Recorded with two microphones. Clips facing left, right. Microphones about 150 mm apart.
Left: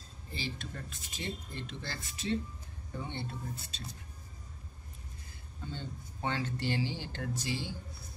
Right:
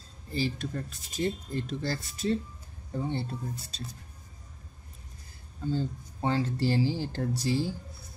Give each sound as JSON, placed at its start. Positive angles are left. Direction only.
{"t": 0.3, "sound": "speech", "side_deg": -40}
{"t": 5.7, "sound": "speech", "side_deg": -35}